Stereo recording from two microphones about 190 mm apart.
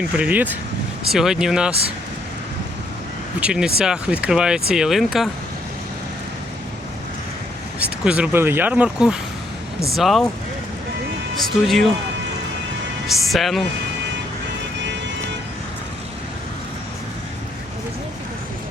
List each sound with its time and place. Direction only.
0.1 s speech: 5° right (ahead or behind)
3.4 s speech: 5° right (ahead or behind)
7.8 s speech: 5° right (ahead or behind)
11.6 s speech: centre (ahead or behind)
13.1 s speech: centre (ahead or behind)